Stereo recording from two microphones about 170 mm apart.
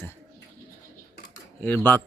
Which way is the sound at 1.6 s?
10° left (ahead or behind).